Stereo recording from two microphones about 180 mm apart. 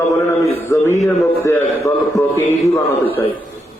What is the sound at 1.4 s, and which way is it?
A man's voice, 15° left (ahead or behind).